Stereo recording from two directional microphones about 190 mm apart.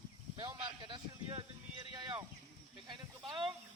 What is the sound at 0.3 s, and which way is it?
Speech, 25° right (ahead or behind).